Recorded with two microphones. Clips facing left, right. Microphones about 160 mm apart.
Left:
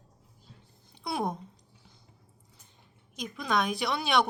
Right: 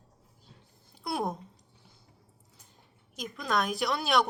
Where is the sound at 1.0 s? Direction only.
Centre (ahead or behind).